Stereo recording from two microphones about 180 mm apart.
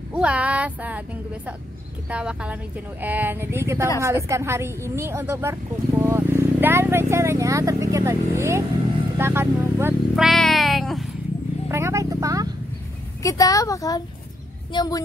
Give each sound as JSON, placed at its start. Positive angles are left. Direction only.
{"t": 0.1, "sound": "a woman's voice", "side_deg": -5}
{"t": 10.1, "sound": "cat", "side_deg": 0}
{"t": 11.7, "sound": "speech", "side_deg": -15}
{"t": 13.2, "sound": "a woman's voice", "side_deg": 20}